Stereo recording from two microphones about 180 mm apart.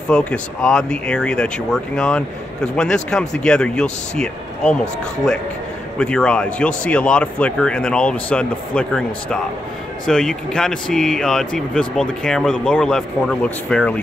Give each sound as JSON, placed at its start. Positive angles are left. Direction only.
{"t": 0.1, "sound": "speech", "side_deg": 5}
{"t": 5.9, "sound": "speech", "side_deg": 5}